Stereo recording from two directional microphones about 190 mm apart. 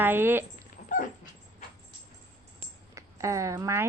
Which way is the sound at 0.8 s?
40° left (ahead or behind).